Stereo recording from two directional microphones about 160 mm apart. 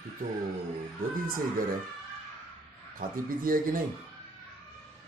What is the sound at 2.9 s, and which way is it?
Speech, 60° right (ahead or behind).